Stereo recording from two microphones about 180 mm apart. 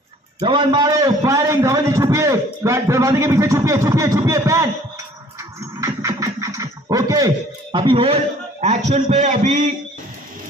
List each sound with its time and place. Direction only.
0.4 s a man's voice: 25° right (ahead or behind)
5.6 s scratching: 15° right (ahead or behind); by 9.6 s 40° right (ahead or behind)